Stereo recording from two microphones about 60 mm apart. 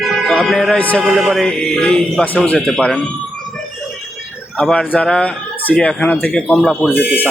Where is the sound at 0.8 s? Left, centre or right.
Left.